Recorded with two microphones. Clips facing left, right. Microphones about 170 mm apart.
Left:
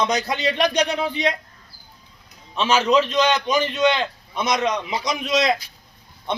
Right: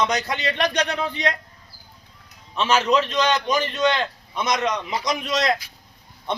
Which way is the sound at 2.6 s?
30° left (ahead or behind).